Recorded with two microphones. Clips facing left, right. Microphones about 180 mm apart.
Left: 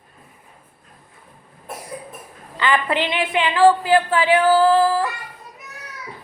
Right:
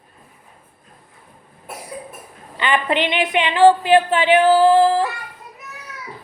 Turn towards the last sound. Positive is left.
turn(degrees=-25)  # may be behind; listen again after turning